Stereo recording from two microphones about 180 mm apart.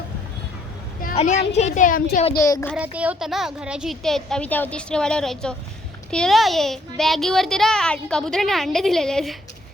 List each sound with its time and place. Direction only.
1.1 s a child's voice: 40° left (ahead or behind)
2.4 s a child's voice: 15° left (ahead or behind)
2.7 s a child's voice: 10° right (ahead or behind)